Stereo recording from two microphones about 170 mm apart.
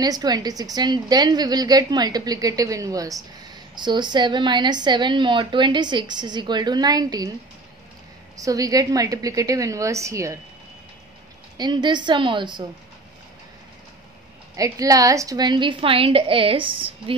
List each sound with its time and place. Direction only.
0.0 s a woman's voice: 25° right (ahead or behind)
8.4 s a woman's voice: 20° right (ahead or behind)
11.5 s a woman's voice: 25° right (ahead or behind)
14.5 s a woman's voice: 20° right (ahead or behind)